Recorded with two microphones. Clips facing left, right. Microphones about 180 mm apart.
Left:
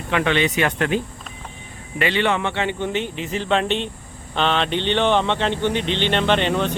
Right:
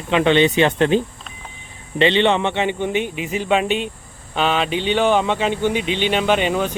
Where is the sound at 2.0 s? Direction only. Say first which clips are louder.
Right 5 dB; 25° right (ahead or behind).